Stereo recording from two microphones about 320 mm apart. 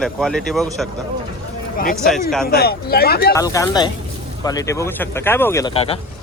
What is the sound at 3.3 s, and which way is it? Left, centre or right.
Speech, centre.